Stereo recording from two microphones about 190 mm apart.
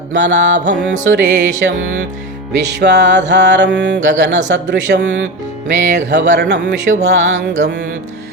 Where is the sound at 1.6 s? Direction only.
65° right (ahead or behind).